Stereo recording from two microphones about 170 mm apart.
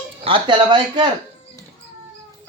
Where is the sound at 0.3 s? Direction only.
30° right (ahead or behind).